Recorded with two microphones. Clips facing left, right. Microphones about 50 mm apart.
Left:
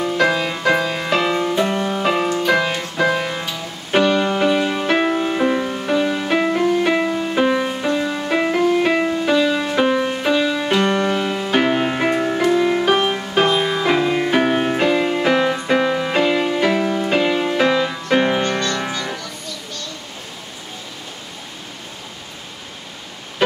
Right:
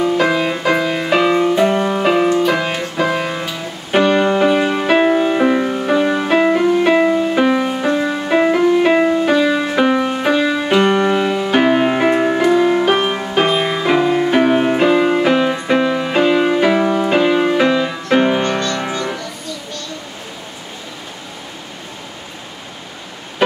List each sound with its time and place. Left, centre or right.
0.2 s music: centre
3.9 s music: centre
7.8 s music: right
8.1 s music: centre
9.8 s music: right
10.5 s music: centre
13.8 s music: centre; by 17.1 s right
17.1 s music: centre
18.9 s music: right